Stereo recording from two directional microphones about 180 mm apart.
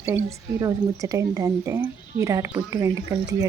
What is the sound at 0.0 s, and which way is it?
Speech, 15° right (ahead or behind).